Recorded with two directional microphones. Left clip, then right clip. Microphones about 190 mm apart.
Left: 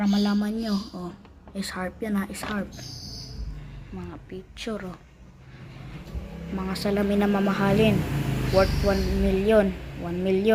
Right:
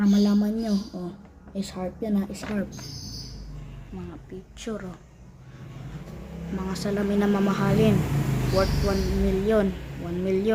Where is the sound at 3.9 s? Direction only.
5° left (ahead or behind).